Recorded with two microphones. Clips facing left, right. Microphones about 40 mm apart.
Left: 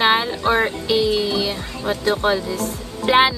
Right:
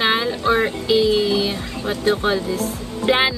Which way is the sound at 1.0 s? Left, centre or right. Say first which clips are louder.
Right 2 dB; right.